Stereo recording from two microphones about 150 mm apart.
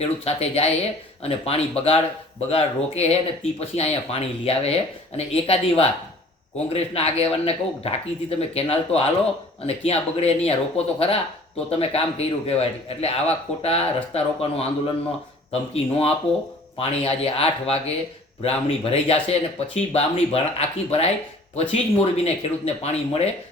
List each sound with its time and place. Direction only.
0.0 s speech: 45° left (ahead or behind)
15.7 s speech: 40° left (ahead or behind)